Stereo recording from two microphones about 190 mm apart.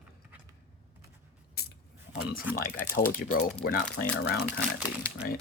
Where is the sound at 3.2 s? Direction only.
50° left (ahead or behind).